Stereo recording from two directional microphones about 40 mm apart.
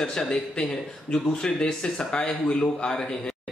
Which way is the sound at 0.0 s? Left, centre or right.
Centre.